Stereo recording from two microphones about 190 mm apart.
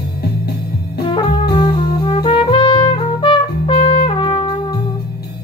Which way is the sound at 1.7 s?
25° left (ahead or behind).